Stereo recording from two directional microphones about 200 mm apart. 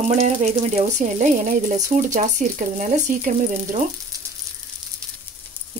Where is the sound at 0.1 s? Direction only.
35° right (ahead or behind).